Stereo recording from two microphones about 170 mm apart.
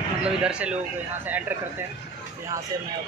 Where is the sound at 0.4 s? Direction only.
5° right (ahead or behind).